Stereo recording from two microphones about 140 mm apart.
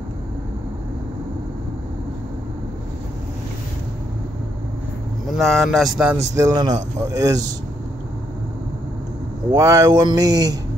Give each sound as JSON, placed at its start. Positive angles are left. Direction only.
{"t": 5.4, "sound": "speech", "side_deg": 0}
{"t": 6.3, "sound": "speech", "side_deg": -25}
{"t": 9.5, "sound": "speech", "side_deg": -25}